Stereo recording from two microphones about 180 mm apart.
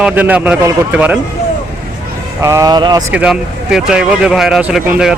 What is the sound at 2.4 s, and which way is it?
Speech, 15° right (ahead or behind).